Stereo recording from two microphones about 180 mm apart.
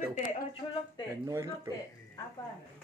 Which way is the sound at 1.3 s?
20° right (ahead or behind).